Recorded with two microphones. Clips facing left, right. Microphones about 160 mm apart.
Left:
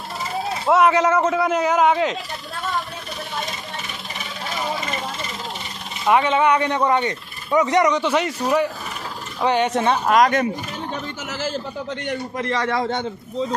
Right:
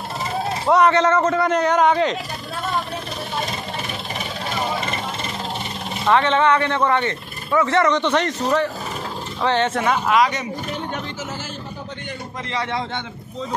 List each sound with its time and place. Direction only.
0.7 s a man's voice: 5° left (ahead or behind)
6.0 s speech: 10° left (ahead or behind)
10.0 s speech: 45° left (ahead or behind)